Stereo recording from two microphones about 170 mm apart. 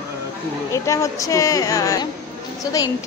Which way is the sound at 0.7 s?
20° left (ahead or behind).